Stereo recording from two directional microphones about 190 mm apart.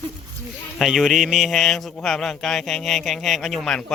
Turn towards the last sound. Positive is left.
turn(degrees=0)  # may be behind; listen again after turning